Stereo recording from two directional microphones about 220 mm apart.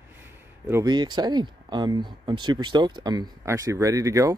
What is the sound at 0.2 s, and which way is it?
Speech, 10° right (ahead or behind).